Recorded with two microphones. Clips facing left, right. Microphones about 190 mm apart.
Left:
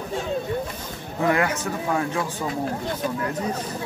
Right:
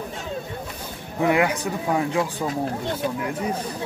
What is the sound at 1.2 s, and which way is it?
A man's voice, 15° right (ahead or behind).